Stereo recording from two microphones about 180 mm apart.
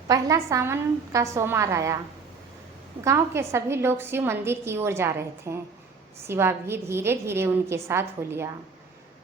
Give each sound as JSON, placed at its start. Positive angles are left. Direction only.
{"t": 0.1, "sound": "a woman's voice", "side_deg": -20}
{"t": 3.0, "sound": "a woman's voice", "side_deg": -15}